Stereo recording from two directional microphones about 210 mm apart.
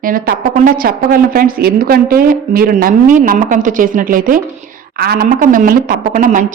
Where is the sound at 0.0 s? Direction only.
40° right (ahead or behind).